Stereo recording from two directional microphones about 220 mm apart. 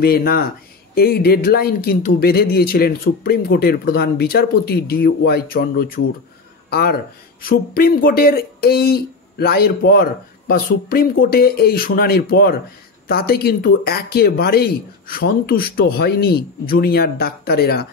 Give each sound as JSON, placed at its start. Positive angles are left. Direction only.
{"t": 0.0, "sound": "speech", "side_deg": 45}